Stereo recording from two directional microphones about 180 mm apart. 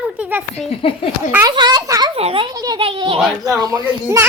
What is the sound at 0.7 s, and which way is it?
Speech, 30° left (ahead or behind).